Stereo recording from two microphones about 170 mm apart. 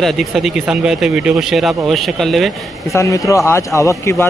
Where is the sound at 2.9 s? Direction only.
20° left (ahead or behind).